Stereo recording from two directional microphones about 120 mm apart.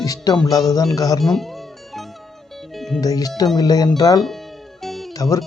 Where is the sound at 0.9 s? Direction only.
30° left (ahead or behind).